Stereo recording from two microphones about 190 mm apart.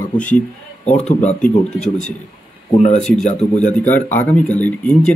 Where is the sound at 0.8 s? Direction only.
35° left (ahead or behind).